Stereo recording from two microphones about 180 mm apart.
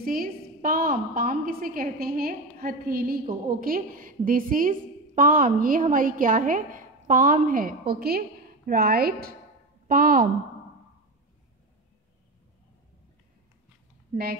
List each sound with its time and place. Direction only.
0.0 s a woman's voice: 50° right (ahead or behind)